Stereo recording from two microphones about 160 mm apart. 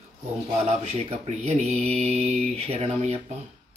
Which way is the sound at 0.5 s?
40° right (ahead or behind).